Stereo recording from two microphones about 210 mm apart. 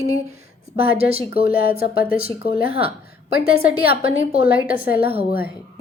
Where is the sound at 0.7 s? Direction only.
45° left (ahead or behind).